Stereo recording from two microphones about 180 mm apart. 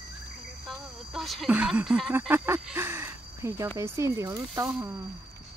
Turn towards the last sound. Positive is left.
turn(degrees=-15)  # may be behind; listen again after turning